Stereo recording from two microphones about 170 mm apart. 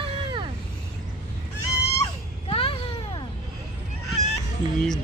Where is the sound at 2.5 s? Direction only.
30° left (ahead or behind).